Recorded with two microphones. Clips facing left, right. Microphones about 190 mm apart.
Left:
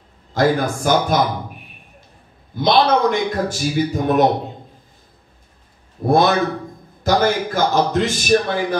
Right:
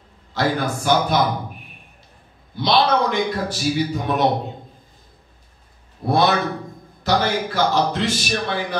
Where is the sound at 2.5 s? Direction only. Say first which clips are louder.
Left 3 dB; 50° left (ahead or behind).